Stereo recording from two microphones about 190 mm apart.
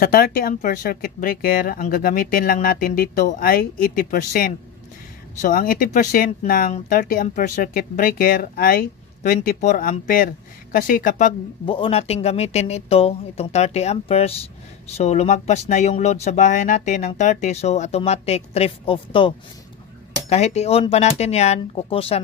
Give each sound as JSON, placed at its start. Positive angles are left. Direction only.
{"t": 0.0, "sound": "speech", "side_deg": 50}
{"t": 11.6, "sound": "speech", "side_deg": 30}